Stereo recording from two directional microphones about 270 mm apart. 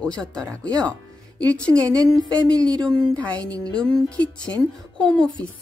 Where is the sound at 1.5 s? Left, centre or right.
Centre.